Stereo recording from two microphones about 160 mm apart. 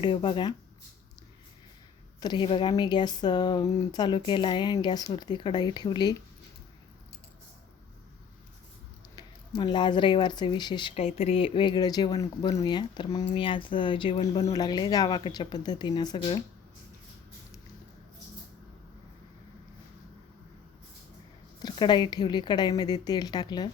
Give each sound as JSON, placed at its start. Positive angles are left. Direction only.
{"t": 0.0, "sound": "speech", "side_deg": 30}
{"t": 2.2, "sound": "speech", "side_deg": 30}
{"t": 9.6, "sound": "speech", "side_deg": 30}
{"t": 14.5, "sound": "speech", "side_deg": 25}
{"t": 21.6, "sound": "speech", "side_deg": 30}